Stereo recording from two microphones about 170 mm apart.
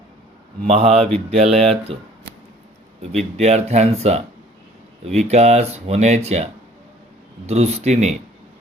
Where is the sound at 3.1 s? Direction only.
40° right (ahead or behind).